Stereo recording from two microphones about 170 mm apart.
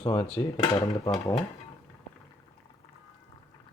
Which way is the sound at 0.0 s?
35° left (ahead or behind).